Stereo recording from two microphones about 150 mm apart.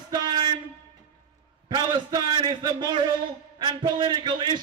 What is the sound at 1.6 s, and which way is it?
A man's voice, 30° right (ahead or behind).